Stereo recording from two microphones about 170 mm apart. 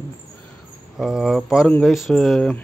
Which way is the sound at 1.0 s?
Centre (ahead or behind).